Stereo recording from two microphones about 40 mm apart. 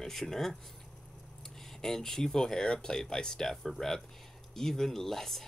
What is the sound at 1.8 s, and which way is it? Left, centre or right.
Speech, centre.